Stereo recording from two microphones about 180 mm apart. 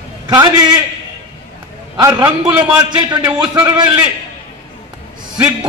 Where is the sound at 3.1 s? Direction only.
25° right (ahead or behind).